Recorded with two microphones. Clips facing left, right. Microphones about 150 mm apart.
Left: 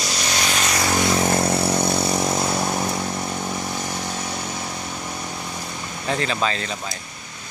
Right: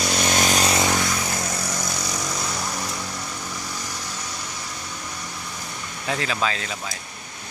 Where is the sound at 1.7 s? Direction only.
60° left (ahead or behind).